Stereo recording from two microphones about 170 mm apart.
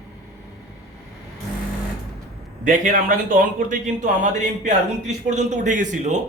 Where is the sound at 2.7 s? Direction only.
55° right (ahead or behind).